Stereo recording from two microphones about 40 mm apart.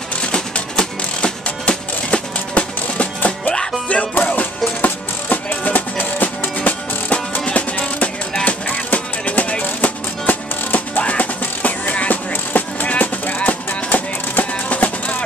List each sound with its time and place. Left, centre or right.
0.2 s music: left